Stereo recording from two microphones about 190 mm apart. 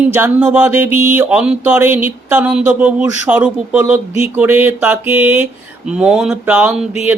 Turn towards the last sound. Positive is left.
turn(degrees=-5)  # may be behind; listen again after turning